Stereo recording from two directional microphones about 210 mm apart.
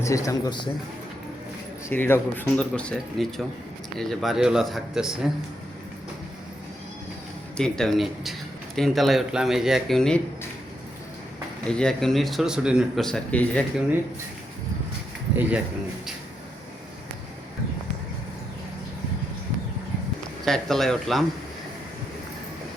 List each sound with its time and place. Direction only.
0.0 s speech: 15° left (ahead or behind)
1.9 s speech: 10° left (ahead or behind)
7.5 s speech: 5° left (ahead or behind)
11.6 s speech: 5° left (ahead or behind)
15.4 s speech: 10° right (ahead or behind)
20.4 s speech: centre (ahead or behind)